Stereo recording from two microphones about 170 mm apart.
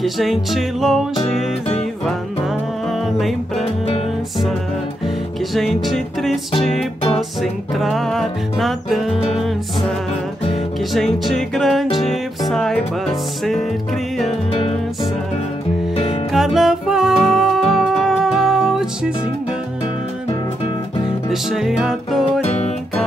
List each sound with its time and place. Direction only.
0.0 s music: centre (ahead or behind)
2.9 s music: centre (ahead or behind)
3.6 s music: 35° left (ahead or behind)
5.0 s music: centre (ahead or behind)
10.9 s music: centre (ahead or behind)
16.3 s music: centre (ahead or behind)
21.3 s music: centre (ahead or behind)